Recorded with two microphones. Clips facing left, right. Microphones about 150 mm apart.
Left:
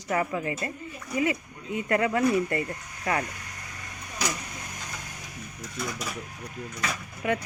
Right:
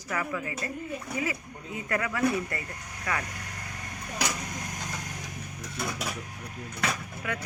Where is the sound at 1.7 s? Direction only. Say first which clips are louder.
Left 6 dB; 25° left (ahead or behind).